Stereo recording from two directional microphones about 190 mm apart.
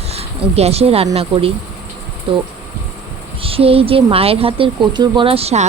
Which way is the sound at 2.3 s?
30° right (ahead or behind).